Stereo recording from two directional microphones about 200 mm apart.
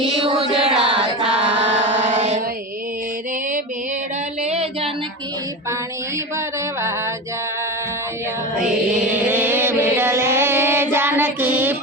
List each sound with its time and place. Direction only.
0.6 s a sound: 5° right (ahead or behind)
1.5 s chant: 65° right (ahead or behind)
2.0 s mantra: 35° right (ahead or behind)
4.4 s female singing: 30° right (ahead or behind)
9.0 s mantra: 10° right (ahead or behind)